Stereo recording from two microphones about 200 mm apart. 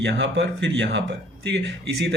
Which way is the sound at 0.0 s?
65° right (ahead or behind).